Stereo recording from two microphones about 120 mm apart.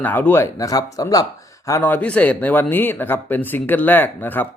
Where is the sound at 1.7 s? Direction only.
20° left (ahead or behind).